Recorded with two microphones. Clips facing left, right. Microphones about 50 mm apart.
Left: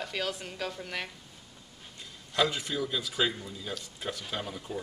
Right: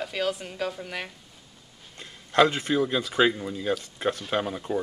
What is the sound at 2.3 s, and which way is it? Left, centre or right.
A man's voice, right.